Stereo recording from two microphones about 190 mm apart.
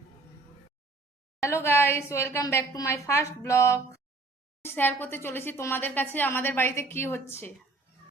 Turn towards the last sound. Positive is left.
turn(degrees=10)  # may be behind; listen again after turning